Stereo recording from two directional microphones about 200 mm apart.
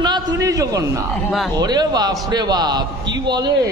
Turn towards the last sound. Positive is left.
turn(degrees=-20)  # may be behind; listen again after turning